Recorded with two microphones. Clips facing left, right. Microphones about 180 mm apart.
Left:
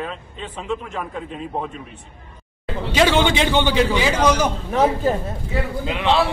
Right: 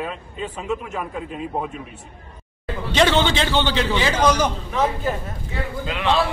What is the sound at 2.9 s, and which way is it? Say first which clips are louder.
A man's voice: left 1 dB; 10° left (ahead or behind).